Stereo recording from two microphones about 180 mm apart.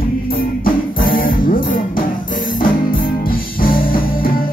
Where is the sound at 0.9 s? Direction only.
50° left (ahead or behind).